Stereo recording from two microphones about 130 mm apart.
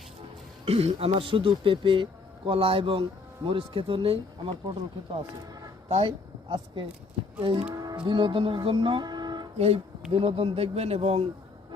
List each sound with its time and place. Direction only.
0.6 s speech: 50° right (ahead or behind)
6.0 s speech: 40° right (ahead or behind)
7.7 s music: 30° right (ahead or behind)
7.9 s speech: 40° right (ahead or behind)
9.6 s speech: 55° right (ahead or behind)
10.1 s speech: 45° right (ahead or behind)